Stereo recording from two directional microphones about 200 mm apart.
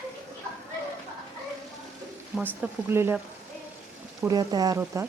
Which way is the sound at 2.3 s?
5° right (ahead or behind).